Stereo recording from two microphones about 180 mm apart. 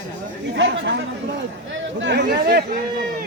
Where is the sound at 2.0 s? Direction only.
70° right (ahead or behind).